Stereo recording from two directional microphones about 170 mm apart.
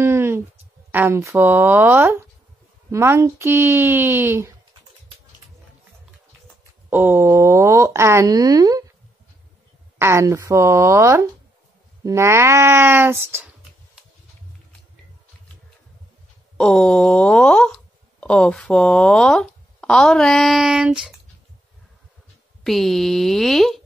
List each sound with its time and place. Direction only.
0.0 s a sound: 15° right (ahead or behind)
0.9 s speech: 15° right (ahead or behind)
6.9 s speech: 10° right (ahead or behind)
9.9 s speech: 15° right (ahead or behind)
16.5 s speech: 5° left (ahead or behind)
22.6 s speech: centre (ahead or behind)